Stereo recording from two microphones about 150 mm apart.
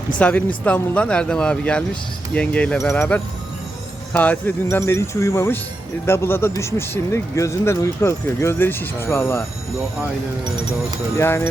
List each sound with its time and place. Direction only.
0.2 s speech: 10° left (ahead or behind)
11.2 s speech: 15° left (ahead or behind)